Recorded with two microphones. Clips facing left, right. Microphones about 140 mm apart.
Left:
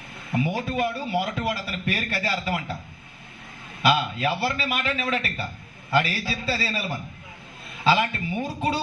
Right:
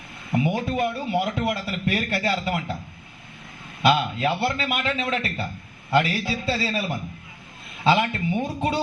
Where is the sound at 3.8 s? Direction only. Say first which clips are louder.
Right 2 dB; 25° right (ahead or behind).